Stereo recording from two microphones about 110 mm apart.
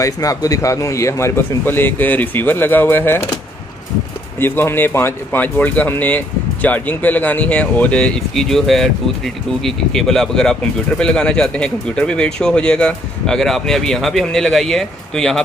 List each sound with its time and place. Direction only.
0.0 s a man's voice: 30° left (ahead or behind)
4.4 s speech: 20° left (ahead or behind); by 15.4 s 5° left (ahead or behind)